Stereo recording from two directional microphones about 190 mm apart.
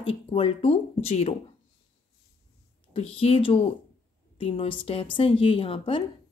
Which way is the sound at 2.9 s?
30° left (ahead or behind).